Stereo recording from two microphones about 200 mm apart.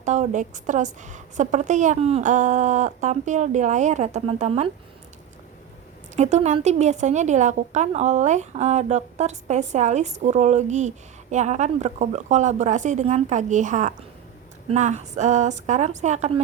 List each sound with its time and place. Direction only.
0.0 s a woman's voice: 35° right (ahead or behind)
6.1 s a woman's voice: 35° right (ahead or behind)